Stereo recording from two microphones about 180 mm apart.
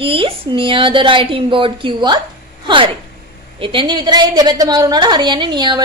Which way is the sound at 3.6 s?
30° right (ahead or behind).